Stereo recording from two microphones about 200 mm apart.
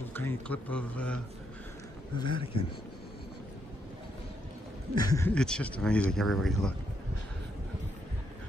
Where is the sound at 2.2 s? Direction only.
25° left (ahead or behind).